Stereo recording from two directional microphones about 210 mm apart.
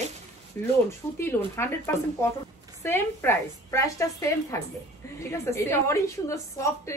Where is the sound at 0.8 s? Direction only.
10° left (ahead or behind).